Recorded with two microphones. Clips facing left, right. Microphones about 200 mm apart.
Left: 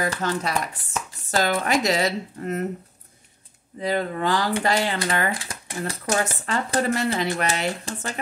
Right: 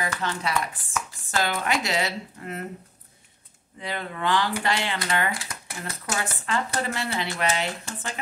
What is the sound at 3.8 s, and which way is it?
Speech, 40° left (ahead or behind).